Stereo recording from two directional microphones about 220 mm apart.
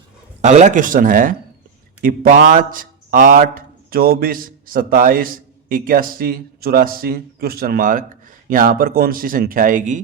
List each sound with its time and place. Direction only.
0.4 s speech: 35° right (ahead or behind)